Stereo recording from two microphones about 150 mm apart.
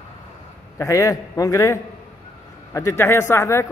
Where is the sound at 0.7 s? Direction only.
20° left (ahead or behind).